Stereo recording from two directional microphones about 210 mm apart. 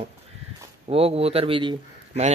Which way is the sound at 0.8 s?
30° right (ahead or behind).